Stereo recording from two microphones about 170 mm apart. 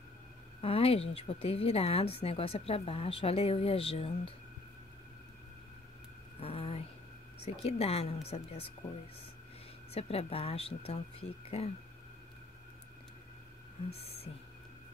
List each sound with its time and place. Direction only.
0.6 s a woman's voice: 35° left (ahead or behind)
6.4 s a sound: 35° left (ahead or behind)
7.5 s a woman's voice: 35° left (ahead or behind)
9.9 s a woman's voice: 35° left (ahead or behind)
13.9 s a woman's voice: 35° left (ahead or behind)